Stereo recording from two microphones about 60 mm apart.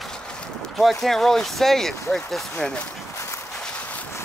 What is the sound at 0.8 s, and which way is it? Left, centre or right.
Speech, centre.